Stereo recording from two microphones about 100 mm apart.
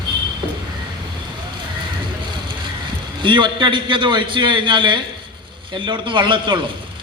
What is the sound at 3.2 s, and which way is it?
A man's voice, 50° right (ahead or behind).